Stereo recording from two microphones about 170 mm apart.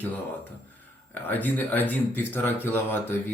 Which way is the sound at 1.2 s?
10° left (ahead or behind).